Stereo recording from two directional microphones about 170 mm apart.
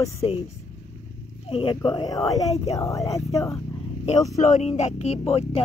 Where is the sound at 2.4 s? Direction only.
40° left (ahead or behind).